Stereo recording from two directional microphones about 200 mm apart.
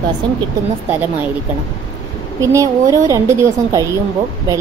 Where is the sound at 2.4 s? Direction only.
15° right (ahead or behind).